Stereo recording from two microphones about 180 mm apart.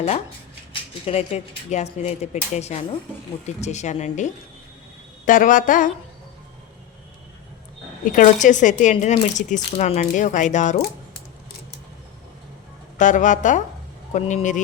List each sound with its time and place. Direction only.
0.7 s speech: 35° left (ahead or behind)
8.0 s speech: 45° left (ahead or behind)
13.0 s speech: 45° left (ahead or behind)